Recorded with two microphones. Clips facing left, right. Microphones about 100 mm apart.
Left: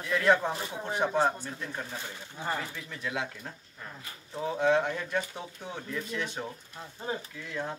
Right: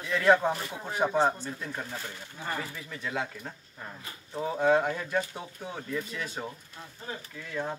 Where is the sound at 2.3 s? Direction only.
20° left (ahead or behind).